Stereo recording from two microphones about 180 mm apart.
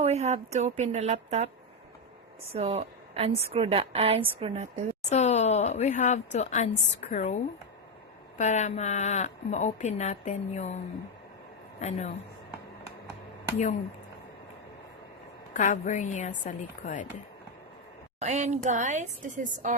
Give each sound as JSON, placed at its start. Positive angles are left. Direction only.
{"t": 0.0, "sound": "a woman's voice", "side_deg": -35}
{"t": 2.5, "sound": "a woman's voice", "side_deg": -35}
{"t": 5.0, "sound": "a woman's voice", "side_deg": 40}
{"t": 8.4, "sound": "a woman's voice", "side_deg": 40}
{"t": 11.8, "sound": "a woman's voice", "side_deg": 40}
{"t": 15.5, "sound": "a woman's voice", "side_deg": 45}
{"t": 18.2, "sound": "a woman's voice", "side_deg": -40}